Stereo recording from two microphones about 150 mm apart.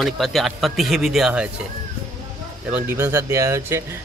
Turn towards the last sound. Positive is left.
turn(degrees=-15)  # may be behind; listen again after turning